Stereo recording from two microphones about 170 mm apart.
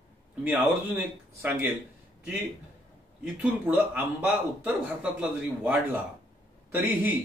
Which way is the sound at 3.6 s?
10° right (ahead or behind).